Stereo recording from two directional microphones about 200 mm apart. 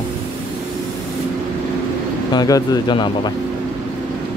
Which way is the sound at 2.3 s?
20° left (ahead or behind).